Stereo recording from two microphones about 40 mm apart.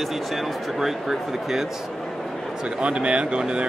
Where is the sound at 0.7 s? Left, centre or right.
Centre.